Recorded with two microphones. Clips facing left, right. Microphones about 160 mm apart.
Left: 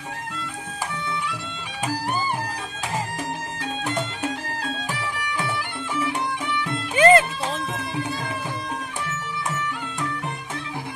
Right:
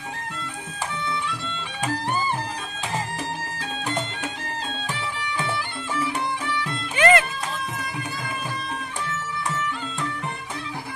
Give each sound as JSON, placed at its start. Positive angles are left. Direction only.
{"t": 7.0, "sound": "music", "side_deg": 30}